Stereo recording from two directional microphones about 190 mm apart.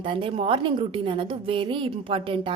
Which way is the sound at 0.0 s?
25° right (ahead or behind).